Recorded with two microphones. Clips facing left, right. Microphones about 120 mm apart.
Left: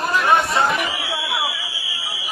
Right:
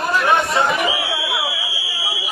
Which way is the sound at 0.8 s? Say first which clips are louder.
Right 5 dB; 70° right (ahead or behind).